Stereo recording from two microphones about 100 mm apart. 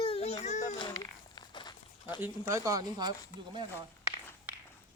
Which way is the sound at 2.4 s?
30° right (ahead or behind).